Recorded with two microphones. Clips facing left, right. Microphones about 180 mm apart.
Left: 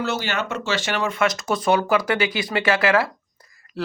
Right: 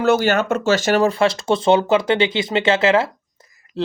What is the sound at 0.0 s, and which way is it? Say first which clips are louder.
Speech: right 9 dB; 50° right (ahead or behind).